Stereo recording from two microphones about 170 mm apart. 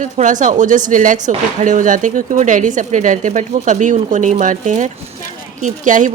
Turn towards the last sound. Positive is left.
turn(degrees=-50)  # may be behind; listen again after turning